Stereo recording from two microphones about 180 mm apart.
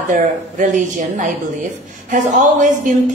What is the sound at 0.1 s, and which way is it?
Speech, 45° right (ahead or behind).